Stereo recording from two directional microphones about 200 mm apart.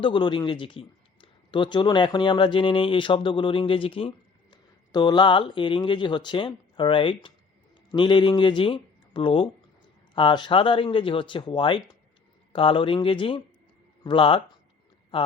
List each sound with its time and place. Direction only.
0.0 s speech: 25° left (ahead or behind)